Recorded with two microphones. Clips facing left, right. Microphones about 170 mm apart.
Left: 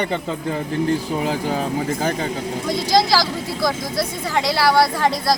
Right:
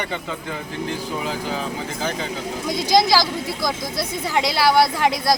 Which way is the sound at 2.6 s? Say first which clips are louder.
Even; 15° right (ahead or behind).